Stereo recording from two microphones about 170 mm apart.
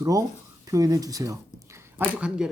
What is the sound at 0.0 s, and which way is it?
Speech, 20° right (ahead or behind).